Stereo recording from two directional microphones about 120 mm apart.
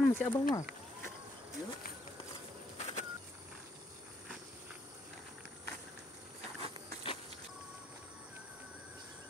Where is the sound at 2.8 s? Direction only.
65° left (ahead or behind).